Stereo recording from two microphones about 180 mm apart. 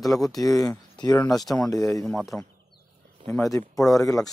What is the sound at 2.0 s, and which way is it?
Speech, centre (ahead or behind).